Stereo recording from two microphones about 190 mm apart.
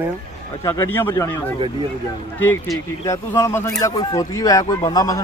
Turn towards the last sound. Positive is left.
turn(degrees=20)  # may be behind; listen again after turning